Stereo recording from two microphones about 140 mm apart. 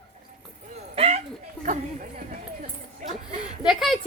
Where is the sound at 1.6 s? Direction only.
10° left (ahead or behind).